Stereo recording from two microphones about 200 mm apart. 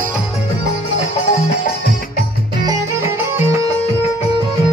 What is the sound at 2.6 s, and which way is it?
Music, 15° right (ahead or behind).